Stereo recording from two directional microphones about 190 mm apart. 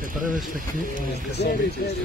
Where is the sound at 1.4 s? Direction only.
60° left (ahead or behind).